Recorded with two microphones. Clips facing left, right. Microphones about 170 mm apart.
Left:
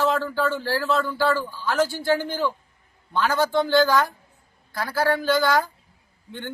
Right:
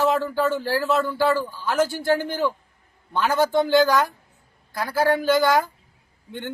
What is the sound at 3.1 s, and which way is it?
Speech, 20° right (ahead or behind).